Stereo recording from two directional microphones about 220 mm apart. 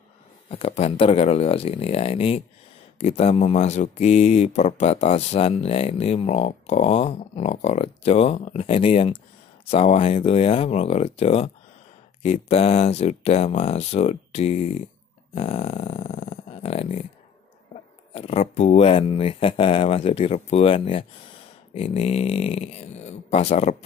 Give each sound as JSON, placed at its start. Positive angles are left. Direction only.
{"t": 0.5, "sound": "speech", "side_deg": 25}
{"t": 18.1, "sound": "speech", "side_deg": 30}